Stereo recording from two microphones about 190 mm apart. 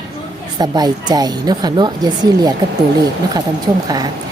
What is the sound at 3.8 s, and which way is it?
Speech, 20° right (ahead or behind).